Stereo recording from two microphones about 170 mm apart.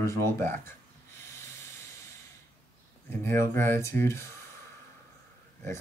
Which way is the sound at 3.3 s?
15° left (ahead or behind).